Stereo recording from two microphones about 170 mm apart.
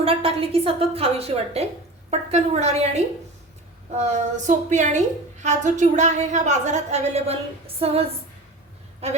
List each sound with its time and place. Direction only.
0.0 s a woman's voice: 35° right (ahead or behind)
9.0 s a woman's voice: 40° right (ahead or behind)